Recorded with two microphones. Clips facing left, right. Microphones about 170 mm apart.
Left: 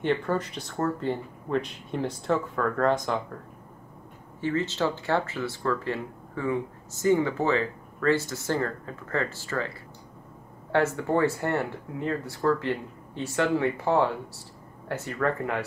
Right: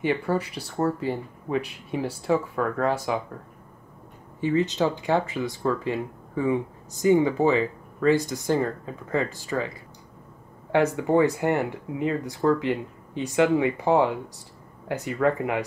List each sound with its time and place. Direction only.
0.0 s speech: 10° right (ahead or behind)
4.4 s speech: 15° right (ahead or behind)
10.7 s speech: 15° right (ahead or behind)